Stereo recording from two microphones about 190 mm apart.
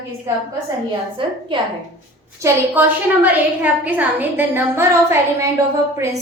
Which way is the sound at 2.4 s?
10° right (ahead or behind).